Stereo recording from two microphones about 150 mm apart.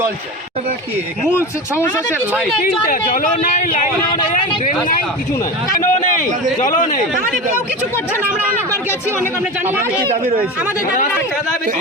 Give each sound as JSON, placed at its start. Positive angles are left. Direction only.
{"t": 3.4, "sound": "speech", "side_deg": 70}
{"t": 5.7, "sound": "a man's voice", "side_deg": 60}